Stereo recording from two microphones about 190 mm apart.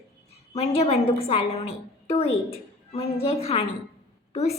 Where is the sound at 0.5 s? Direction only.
30° left (ahead or behind).